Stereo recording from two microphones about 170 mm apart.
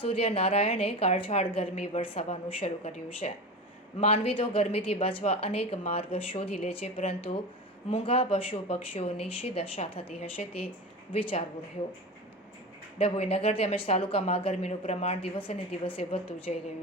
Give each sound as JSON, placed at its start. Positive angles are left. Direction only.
{"t": 0.0, "sound": "a woman's voice", "side_deg": 35}
{"t": 13.0, "sound": "a woman's voice", "side_deg": 35}